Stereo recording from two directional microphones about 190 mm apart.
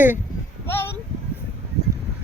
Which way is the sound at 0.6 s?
10° left (ahead or behind).